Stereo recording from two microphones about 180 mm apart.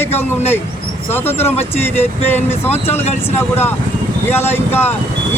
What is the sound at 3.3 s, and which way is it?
Speech, 10° left (ahead or behind).